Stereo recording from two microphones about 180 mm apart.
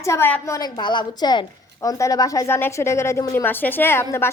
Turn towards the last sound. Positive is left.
turn(degrees=15)  # may be behind; listen again after turning